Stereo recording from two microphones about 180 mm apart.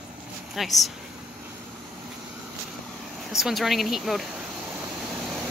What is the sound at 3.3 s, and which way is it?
Speech, centre (ahead or behind).